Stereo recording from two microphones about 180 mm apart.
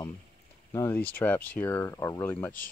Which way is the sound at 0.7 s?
10° left (ahead or behind).